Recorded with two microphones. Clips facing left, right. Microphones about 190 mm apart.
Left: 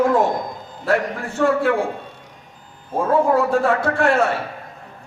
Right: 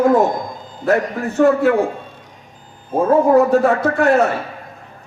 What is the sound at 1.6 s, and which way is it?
Speech, 40° right (ahead or behind).